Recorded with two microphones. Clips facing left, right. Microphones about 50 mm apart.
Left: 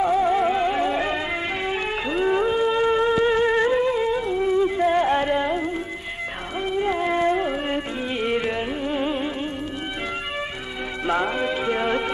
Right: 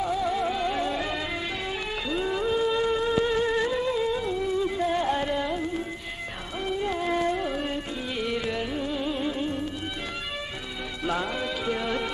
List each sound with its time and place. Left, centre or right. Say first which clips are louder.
0.0 s music: left 7 dB; left
11.1 s music: left 6 dB; left